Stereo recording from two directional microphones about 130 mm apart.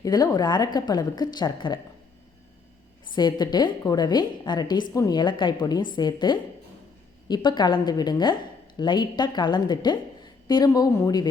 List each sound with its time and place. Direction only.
0.0 s a woman's voice: 30° left (ahead or behind)
3.2 s a woman's voice: 35° left (ahead or behind)